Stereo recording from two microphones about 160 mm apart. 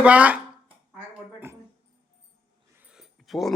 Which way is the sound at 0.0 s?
10° right (ahead or behind).